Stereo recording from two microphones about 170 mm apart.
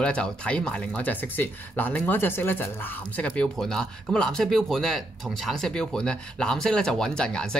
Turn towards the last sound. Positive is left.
turn(degrees=5)  # may be behind; listen again after turning